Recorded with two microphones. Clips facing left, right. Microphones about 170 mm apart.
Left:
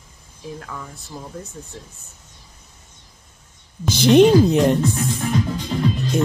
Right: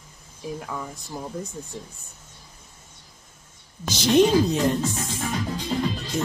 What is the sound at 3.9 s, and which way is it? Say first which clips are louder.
Speech: left 6 dB; 60° left (ahead or behind).